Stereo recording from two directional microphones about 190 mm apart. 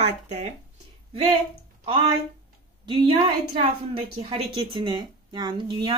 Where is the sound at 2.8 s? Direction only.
30° right (ahead or behind).